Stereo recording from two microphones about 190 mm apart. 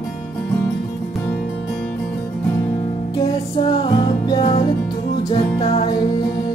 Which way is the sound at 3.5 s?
25° left (ahead or behind).